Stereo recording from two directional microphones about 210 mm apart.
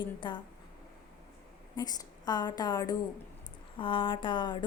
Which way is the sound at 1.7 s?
20° left (ahead or behind).